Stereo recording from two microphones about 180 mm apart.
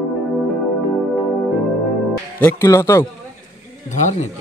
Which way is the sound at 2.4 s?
15° left (ahead or behind).